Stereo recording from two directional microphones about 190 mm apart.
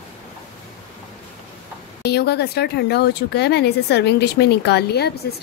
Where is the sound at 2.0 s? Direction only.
60° left (ahead or behind).